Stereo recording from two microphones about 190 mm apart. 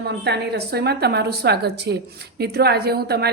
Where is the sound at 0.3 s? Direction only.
60° right (ahead or behind).